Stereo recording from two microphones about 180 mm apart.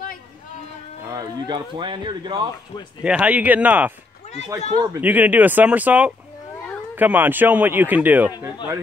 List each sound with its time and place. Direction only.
1.0 s speech: 20° right (ahead or behind)
3.0 s speech: 5° right (ahead or behind)